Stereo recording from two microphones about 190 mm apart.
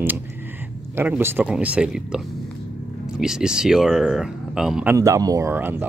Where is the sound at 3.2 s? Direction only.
5° right (ahead or behind).